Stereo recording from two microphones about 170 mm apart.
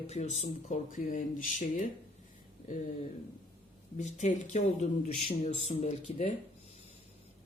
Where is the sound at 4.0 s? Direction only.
45° left (ahead or behind).